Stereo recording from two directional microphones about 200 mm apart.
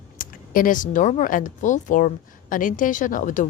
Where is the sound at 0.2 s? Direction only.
45° left (ahead or behind).